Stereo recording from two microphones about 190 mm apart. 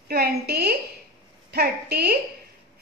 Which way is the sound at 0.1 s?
55° right (ahead or behind).